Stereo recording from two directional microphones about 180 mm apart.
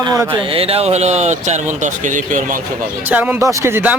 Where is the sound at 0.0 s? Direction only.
20° right (ahead or behind); by 2.6 s 45° right (ahead or behind).